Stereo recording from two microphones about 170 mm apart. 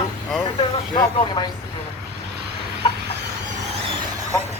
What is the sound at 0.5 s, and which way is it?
Speech, 25° left (ahead or behind).